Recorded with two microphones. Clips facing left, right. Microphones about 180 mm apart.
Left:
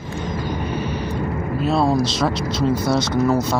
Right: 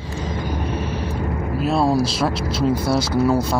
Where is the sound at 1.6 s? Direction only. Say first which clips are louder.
Even; 5° right (ahead or behind).